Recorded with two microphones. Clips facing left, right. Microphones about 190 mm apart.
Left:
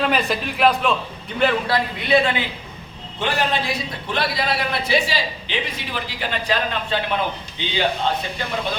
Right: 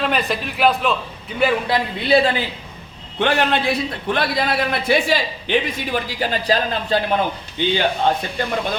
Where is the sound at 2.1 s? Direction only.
35° right (ahead or behind).